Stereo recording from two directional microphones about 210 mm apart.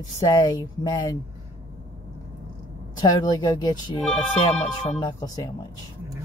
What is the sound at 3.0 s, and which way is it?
Speech, 15° left (ahead or behind).